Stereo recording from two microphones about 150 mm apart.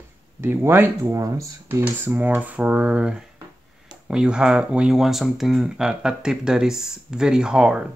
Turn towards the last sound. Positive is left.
turn(degrees=-5)  # may be behind; listen again after turning